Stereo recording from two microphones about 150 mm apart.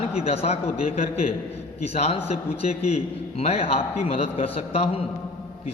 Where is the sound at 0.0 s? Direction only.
45° left (ahead or behind).